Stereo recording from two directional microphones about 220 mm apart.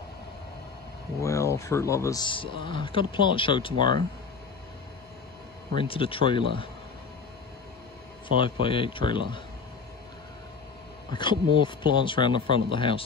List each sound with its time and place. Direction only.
1.2 s speech: 15° left (ahead or behind)
5.8 s speech: 25° left (ahead or behind)
8.4 s speech: 25° left (ahead or behind)
11.1 s speech: 20° left (ahead or behind)